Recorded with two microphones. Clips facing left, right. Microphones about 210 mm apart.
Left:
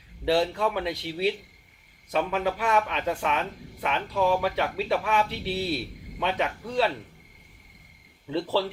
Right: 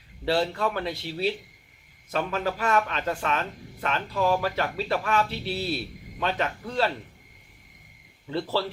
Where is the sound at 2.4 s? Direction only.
10° left (ahead or behind).